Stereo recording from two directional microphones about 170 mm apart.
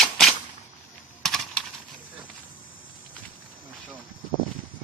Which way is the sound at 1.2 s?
Centre (ahead or behind).